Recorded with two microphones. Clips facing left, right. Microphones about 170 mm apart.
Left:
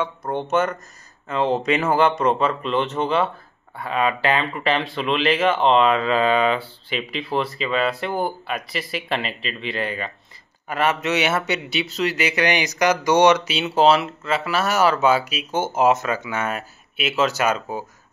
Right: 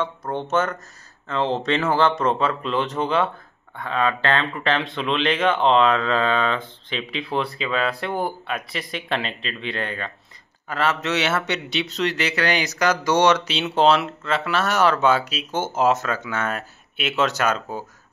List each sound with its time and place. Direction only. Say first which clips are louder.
0.0 s a man's voice: left 1 dB; 10° left (ahead or behind)
1.6 s a man's voice: even; 15° left (ahead or behind)
10.7 s a man's voice: left 2 dB; 15° left (ahead or behind)